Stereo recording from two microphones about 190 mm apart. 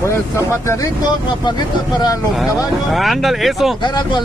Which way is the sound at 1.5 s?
25° left (ahead or behind).